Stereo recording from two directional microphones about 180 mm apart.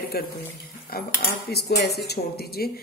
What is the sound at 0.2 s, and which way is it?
Speech, 55° left (ahead or behind).